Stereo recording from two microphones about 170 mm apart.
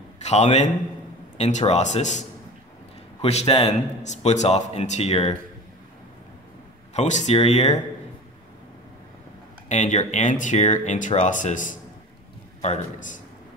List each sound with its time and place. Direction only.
0.2 s a man's voice: 40° left (ahead or behind)
6.9 s speech: 45° left (ahead or behind)
9.7 s speech: 45° left (ahead or behind)